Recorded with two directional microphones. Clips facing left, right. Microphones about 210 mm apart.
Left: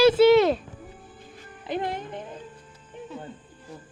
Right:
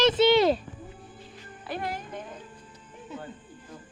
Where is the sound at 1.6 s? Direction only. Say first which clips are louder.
Left 4 dB; 20° left (ahead or behind).